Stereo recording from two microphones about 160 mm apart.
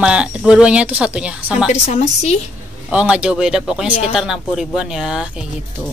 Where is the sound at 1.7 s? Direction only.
50° left (ahead or behind).